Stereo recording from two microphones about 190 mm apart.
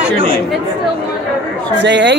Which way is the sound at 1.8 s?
65° right (ahead or behind).